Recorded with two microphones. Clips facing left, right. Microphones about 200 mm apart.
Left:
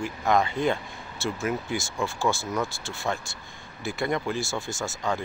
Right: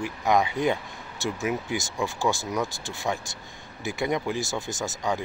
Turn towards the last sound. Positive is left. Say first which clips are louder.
# right 1 dB
turn(degrees=-15)  # may be behind; listen again after turning